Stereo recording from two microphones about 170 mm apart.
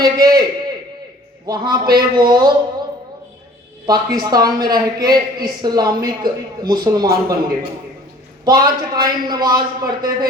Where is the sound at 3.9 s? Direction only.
25° right (ahead or behind).